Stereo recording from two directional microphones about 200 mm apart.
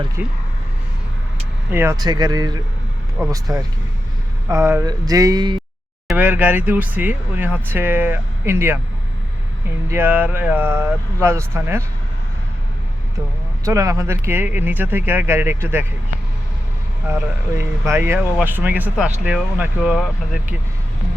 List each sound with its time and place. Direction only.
0.2 s speech: 10° right (ahead or behind)
1.7 s speech: 15° right (ahead or behind)
4.4 s speech: 15° right (ahead or behind)
6.1 s speech: 10° right (ahead or behind)
9.9 s speech: 10° right (ahead or behind)
13.7 s speech: 15° right (ahead or behind)
17.8 s speech: 10° right (ahead or behind)